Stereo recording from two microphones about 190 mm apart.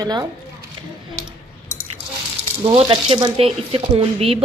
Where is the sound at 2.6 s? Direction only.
30° right (ahead or behind).